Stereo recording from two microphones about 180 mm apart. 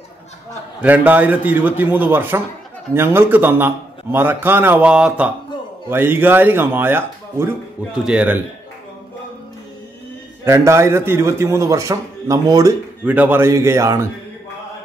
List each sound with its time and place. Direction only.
0.7 s a man's voice: 10° right (ahead or behind)
10.4 s a man's voice: 15° right (ahead or behind)
13.0 s a man's voice: 10° right (ahead or behind)